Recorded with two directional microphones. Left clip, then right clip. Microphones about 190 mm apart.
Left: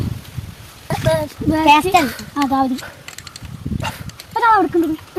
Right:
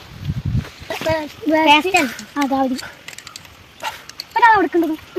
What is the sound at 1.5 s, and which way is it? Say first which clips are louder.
Speech: left 1 dB; 30° left (ahead or behind).